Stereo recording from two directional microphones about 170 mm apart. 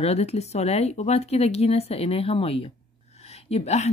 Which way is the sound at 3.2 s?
40° left (ahead or behind).